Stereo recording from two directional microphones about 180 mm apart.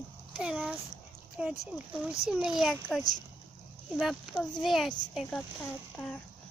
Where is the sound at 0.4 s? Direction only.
5° right (ahead or behind).